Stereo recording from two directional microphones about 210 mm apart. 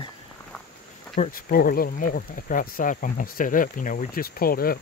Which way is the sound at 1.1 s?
40° left (ahead or behind).